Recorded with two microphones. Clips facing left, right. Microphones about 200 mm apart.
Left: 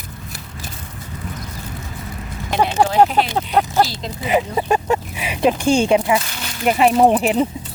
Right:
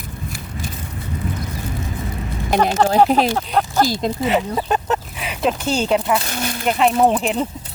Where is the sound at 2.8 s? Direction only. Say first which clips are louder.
Even; 10° left (ahead or behind).